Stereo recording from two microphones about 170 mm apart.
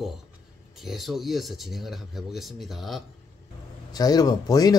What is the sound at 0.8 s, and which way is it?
Speech, centre (ahead or behind).